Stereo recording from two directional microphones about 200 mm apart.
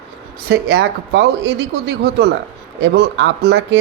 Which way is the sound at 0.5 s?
55° right (ahead or behind).